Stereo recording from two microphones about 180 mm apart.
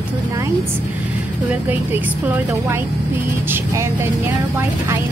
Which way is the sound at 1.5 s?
10° right (ahead or behind).